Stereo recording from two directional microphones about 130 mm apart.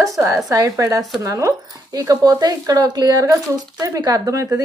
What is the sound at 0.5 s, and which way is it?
A woman's voice, 25° right (ahead or behind).